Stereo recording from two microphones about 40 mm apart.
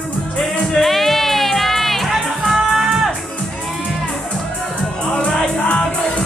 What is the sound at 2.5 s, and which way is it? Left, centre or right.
Music, centre.